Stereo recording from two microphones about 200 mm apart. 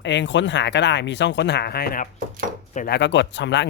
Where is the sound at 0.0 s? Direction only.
60° left (ahead or behind).